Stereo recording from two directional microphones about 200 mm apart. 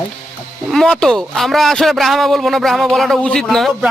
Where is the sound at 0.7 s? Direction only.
Centre (ahead or behind).